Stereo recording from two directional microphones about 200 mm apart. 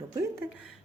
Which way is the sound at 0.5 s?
5° right (ahead or behind).